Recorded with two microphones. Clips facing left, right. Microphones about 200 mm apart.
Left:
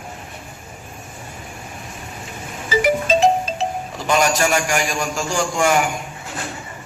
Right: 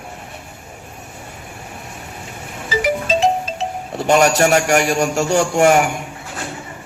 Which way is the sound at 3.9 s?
65° right (ahead or behind).